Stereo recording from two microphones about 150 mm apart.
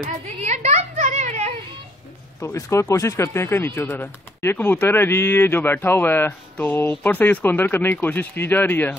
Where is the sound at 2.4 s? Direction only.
20° left (ahead or behind).